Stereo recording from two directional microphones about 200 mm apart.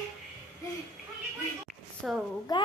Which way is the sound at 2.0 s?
Centre (ahead or behind).